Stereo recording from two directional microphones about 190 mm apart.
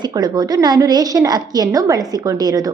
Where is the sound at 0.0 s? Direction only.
20° right (ahead or behind).